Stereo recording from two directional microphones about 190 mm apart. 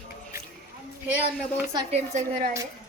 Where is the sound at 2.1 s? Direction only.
40° right (ahead or behind).